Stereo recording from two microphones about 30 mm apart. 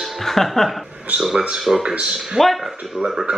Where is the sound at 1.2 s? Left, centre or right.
Centre.